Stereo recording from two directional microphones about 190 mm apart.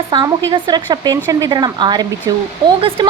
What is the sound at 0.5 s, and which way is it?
A woman's voice, 20° right (ahead or behind).